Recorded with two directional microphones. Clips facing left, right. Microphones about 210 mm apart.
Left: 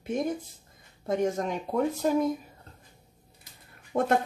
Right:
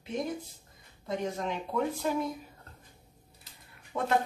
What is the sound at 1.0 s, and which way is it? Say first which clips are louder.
Speech: left 6 dB; 45° left (ahead or behind).